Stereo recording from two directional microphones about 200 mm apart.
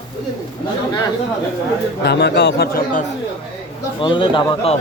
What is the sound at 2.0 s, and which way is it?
Speech, 55° left (ahead or behind).